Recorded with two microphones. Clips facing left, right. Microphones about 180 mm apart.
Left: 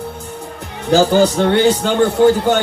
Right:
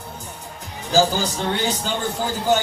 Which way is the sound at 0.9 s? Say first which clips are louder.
Left 8 dB; 65° left (ahead or behind).